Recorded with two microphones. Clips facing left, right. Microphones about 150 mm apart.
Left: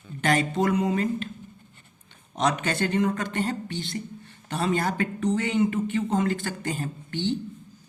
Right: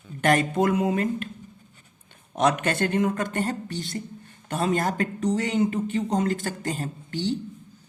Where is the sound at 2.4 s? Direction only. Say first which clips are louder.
Right 2 dB; 55° right (ahead or behind).